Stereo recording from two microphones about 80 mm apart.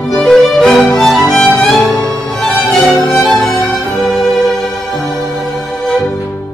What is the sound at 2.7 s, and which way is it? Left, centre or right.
Music, centre.